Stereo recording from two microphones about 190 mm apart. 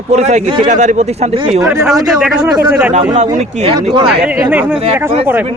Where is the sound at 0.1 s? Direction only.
35° right (ahead or behind).